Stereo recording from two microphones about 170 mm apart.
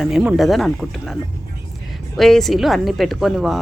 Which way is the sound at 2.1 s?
Centre (ahead or behind).